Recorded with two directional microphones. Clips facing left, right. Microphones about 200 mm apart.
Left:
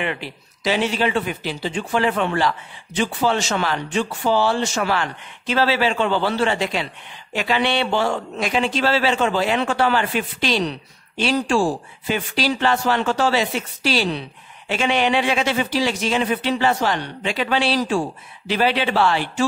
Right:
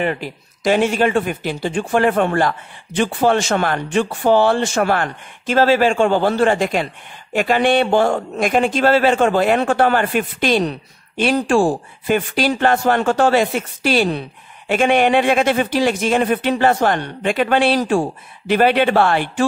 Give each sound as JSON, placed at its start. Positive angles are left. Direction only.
{"t": 0.0, "sound": "speech", "side_deg": -45}